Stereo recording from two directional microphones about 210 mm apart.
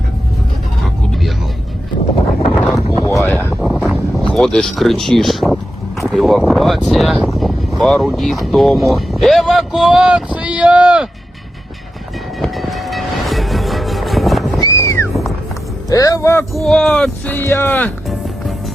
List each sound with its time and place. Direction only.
2.9 s wind noise: 15° left (ahead or behind)
3.2 s a sound: 5° left (ahead or behind)
4.3 s speech: 5° left (ahead or behind)
12.4 s music: centre (ahead or behind)
14.6 s music: 15° left (ahead or behind)
15.1 s music: centre (ahead or behind)
15.9 s speech: 15° left (ahead or behind)